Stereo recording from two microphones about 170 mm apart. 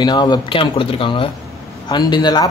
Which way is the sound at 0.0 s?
25° left (ahead or behind).